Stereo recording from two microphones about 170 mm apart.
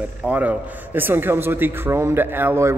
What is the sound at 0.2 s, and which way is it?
A man's voice, 10° right (ahead or behind).